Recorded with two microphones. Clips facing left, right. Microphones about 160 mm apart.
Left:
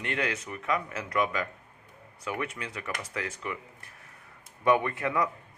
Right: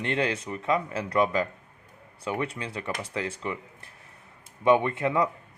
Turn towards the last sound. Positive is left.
turn(degrees=-25)  # may be behind; listen again after turning